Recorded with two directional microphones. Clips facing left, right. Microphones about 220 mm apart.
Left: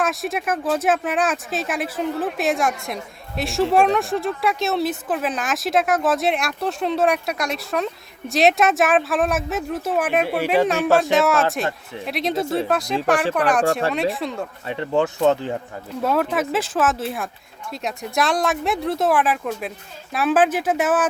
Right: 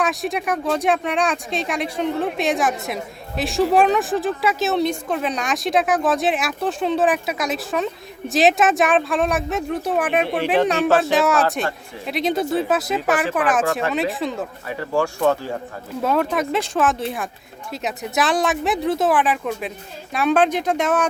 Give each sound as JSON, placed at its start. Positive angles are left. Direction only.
{"t": 0.0, "sound": "a woman's voice", "side_deg": 0}
{"t": 14.7, "sound": "speech", "side_deg": 25}
{"t": 16.0, "sound": "a woman's voice", "side_deg": 0}